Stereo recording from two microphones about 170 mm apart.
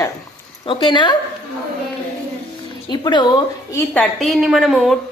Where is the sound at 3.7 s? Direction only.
15° left (ahead or behind).